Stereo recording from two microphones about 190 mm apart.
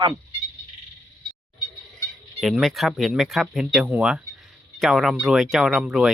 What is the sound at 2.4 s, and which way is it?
Speech, centre (ahead or behind).